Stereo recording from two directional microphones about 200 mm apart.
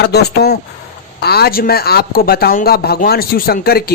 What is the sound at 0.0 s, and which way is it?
A man's voice, 55° left (ahead or behind).